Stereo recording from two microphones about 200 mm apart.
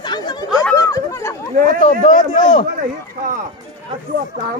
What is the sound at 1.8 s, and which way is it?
Speech, 35° left (ahead or behind).